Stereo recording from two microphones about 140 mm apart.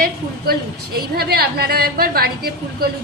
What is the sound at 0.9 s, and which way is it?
A woman's voice, 90° right.